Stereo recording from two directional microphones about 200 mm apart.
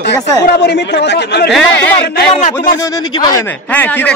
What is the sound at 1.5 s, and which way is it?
Speech, 5° left (ahead or behind).